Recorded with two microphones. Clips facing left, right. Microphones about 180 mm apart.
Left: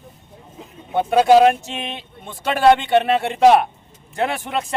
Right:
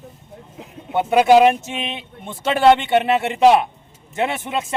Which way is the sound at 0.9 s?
15° right (ahead or behind).